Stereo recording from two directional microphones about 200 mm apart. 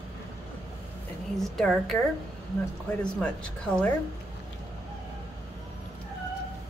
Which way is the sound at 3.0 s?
5° left (ahead or behind).